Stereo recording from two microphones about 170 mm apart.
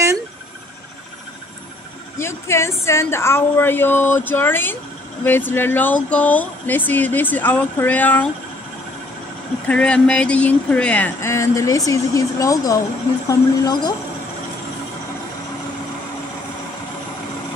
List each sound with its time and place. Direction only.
2.1 s speech: 15° left (ahead or behind)
9.7 s speech: 5° left (ahead or behind); by 13.9 s 25° left (ahead or behind)